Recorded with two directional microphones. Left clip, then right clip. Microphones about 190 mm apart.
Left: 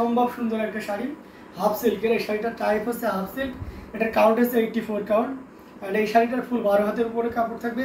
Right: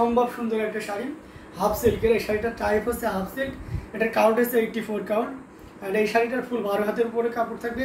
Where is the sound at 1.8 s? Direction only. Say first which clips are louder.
Right 1 dB; 5° right (ahead or behind).